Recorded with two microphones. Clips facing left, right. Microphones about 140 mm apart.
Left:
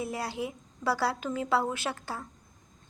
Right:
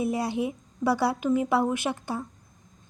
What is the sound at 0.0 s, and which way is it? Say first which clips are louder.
A woman's voice: right 7 dB; 20° right (ahead or behind).